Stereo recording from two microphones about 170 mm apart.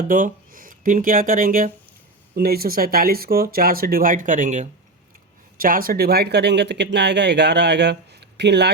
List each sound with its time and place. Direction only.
0.1 s speech: 50° right (ahead or behind)
5.5 s speech: 55° right (ahead or behind); by 8.7 s 80° right